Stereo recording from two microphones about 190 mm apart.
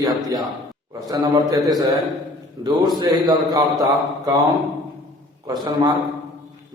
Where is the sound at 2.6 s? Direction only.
20° right (ahead or behind).